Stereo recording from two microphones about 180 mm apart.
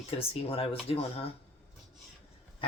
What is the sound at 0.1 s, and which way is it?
Speech, 30° left (ahead or behind).